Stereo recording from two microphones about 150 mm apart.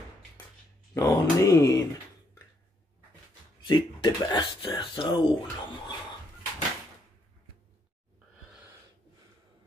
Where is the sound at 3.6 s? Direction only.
30° left (ahead or behind).